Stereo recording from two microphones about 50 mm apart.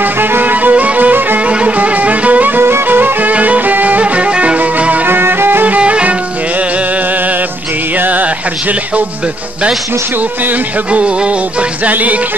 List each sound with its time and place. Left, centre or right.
0.0 s music: right
2.6 s music: right
3.0 s music: right
5.0 s music: right
5.8 s music: right
8.0 s music: right
11.8 s music: right